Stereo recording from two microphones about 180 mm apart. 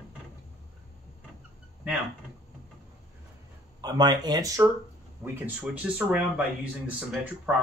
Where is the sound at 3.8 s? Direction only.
20° right (ahead or behind).